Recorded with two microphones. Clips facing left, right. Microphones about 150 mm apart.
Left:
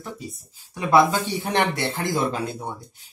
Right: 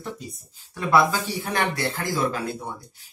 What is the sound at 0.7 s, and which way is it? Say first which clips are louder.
Speech: left 2 dB; 20° left (ahead or behind).